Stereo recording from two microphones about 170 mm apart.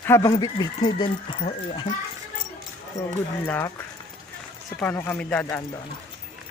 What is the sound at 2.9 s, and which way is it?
Speech, 20° left (ahead or behind).